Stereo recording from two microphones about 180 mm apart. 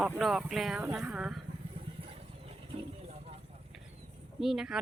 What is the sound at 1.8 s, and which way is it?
Vehicle, 30° right (ahead or behind).